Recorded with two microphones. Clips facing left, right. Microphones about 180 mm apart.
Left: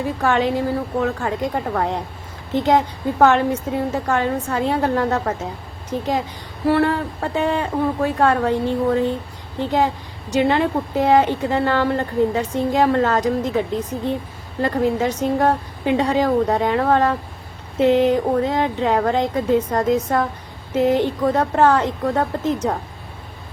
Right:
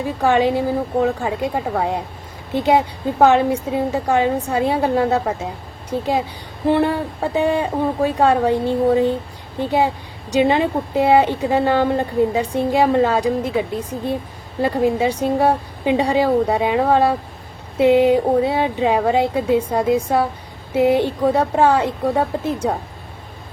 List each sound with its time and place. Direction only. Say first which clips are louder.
0.0 s a woman's voice: right 2 dB; 15° right (ahead or behind)
10.3 s a woman's voice: right 1 dB; 15° right (ahead or behind)